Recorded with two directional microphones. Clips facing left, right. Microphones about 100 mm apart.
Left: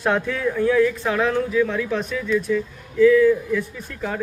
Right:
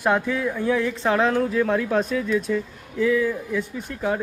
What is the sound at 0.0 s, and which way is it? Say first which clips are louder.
Speech: even; 10° right (ahead or behind).